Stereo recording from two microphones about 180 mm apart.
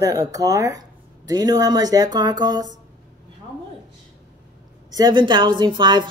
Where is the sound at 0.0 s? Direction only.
20° right (ahead or behind).